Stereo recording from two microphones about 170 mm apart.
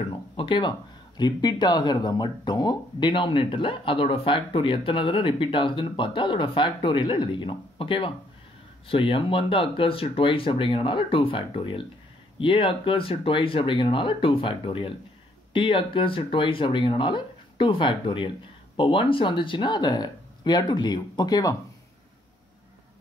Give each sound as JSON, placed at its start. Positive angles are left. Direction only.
{"t": 0.1, "sound": "speech", "side_deg": 30}